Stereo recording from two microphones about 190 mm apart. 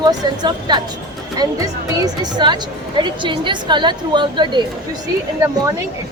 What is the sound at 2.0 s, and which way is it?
A woman's voice, 20° right (ahead or behind).